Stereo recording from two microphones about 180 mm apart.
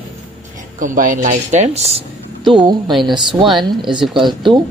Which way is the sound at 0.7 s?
45° right (ahead or behind).